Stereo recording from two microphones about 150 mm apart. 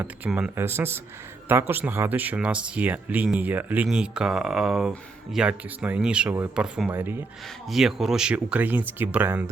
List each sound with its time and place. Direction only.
0.3 s speech: 5° right (ahead or behind)
0.5 s speech: 15° right (ahead or behind)
7.7 s speech: centre (ahead or behind)